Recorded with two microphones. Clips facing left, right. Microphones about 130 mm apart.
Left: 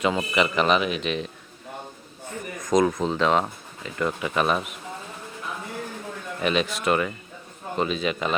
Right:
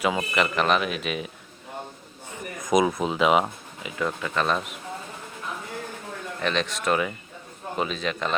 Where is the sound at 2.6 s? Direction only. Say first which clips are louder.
Left 1 dB; 10° right (ahead or behind).